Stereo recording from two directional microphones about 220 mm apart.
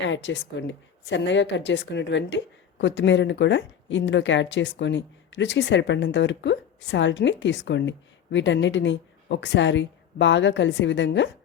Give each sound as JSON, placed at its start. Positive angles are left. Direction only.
{"t": 0.0, "sound": "a woman's voice", "side_deg": 55}